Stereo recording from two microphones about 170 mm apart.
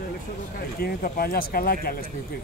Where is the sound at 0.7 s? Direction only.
60° left (ahead or behind).